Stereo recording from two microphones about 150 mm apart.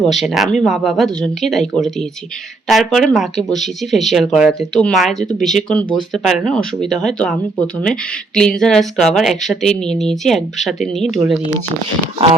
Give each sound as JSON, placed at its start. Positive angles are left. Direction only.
{"t": 0.0, "sound": "speech", "side_deg": 0}
{"t": 8.4, "sound": "speech", "side_deg": 5}